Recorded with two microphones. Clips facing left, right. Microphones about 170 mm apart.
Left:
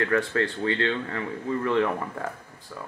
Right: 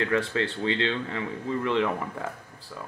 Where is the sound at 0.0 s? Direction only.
20° right (ahead or behind).